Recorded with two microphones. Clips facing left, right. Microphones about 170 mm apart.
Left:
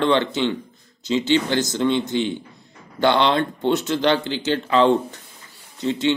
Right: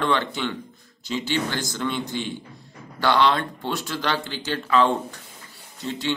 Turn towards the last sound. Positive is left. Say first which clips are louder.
# left 6 dB
turn(degrees=20)  # may be behind; listen again after turning